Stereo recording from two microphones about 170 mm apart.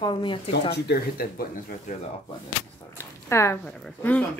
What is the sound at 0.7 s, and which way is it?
Speech, 70° left (ahead or behind).